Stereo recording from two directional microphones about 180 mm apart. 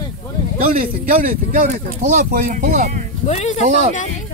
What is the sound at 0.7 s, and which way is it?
Speech, 50° right (ahead or behind).